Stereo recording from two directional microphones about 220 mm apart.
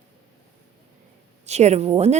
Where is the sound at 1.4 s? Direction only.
30° right (ahead or behind).